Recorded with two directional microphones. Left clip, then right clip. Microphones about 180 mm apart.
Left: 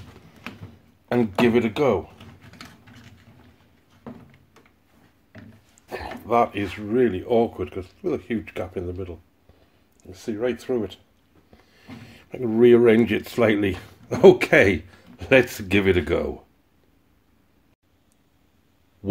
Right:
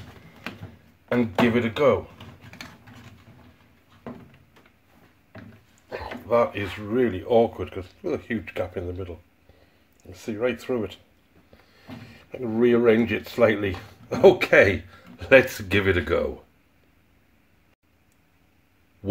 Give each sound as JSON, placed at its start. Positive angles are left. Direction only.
{"t": 1.0, "sound": "speech", "side_deg": 55}
{"t": 5.9, "sound": "speech", "side_deg": 45}
{"t": 11.7, "sound": "speech", "side_deg": 45}